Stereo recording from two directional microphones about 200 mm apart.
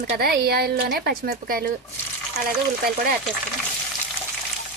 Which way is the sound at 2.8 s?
50° right (ahead or behind).